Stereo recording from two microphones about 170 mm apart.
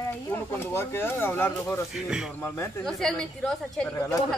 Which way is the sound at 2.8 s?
5° left (ahead or behind).